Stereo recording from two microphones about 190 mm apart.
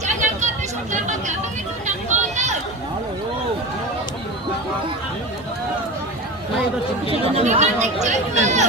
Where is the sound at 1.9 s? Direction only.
40° right (ahead or behind).